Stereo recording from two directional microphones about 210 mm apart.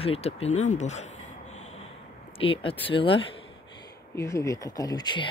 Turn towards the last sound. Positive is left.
turn(degrees=20)  # may be behind; listen again after turning